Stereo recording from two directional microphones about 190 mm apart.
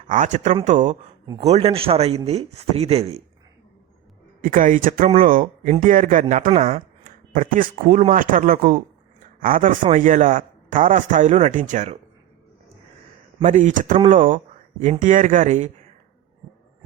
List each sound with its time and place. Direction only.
0.1 s speech: 45° right (ahead or behind)
4.4 s speech: 45° right (ahead or behind)
7.0 s speech: 45° right (ahead or behind)
13.4 s speech: 40° right (ahead or behind)